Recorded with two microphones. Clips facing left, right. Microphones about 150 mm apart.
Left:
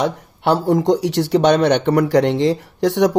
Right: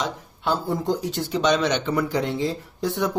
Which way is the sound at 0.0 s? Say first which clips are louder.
Left 8 dB; 80° left.